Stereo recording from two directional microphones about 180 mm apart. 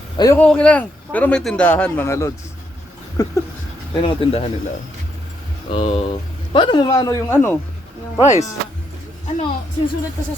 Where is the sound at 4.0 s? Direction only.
30° left (ahead or behind).